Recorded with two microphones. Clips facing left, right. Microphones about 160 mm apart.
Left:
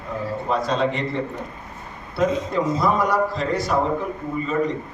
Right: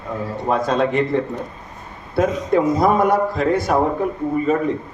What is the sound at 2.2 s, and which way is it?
Speech, 55° right (ahead or behind).